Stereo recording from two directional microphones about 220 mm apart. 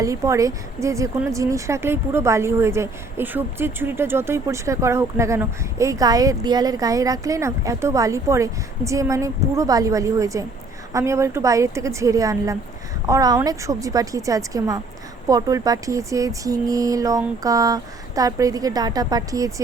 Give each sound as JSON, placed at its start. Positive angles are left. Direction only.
{"t": 0.0, "sound": "speech", "side_deg": -15}